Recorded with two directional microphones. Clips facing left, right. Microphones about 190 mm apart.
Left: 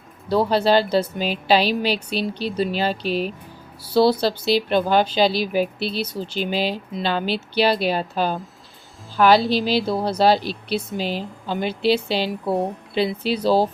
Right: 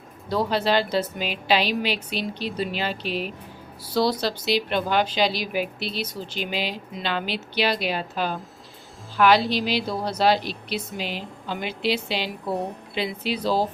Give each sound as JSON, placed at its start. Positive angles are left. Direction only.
{"t": 0.3, "sound": "a woman's voice", "side_deg": 35}
{"t": 4.4, "sound": "a woman's voice", "side_deg": 35}